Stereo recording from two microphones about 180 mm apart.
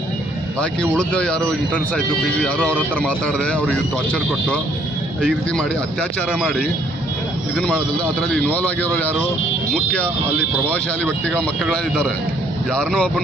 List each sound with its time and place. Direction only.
0.6 s speech: 5° left (ahead or behind)
7.5 s speech: 5° left (ahead or behind)
11.0 s speech: 5° left (ahead or behind)